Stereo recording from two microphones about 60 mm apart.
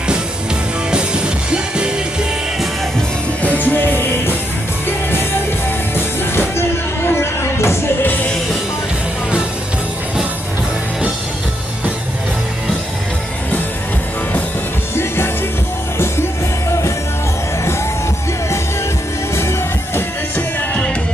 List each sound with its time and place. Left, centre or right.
0.9 s music: centre
3.5 s music: left
5.9 s music: left
19.3 s music: left
20.3 s music: centre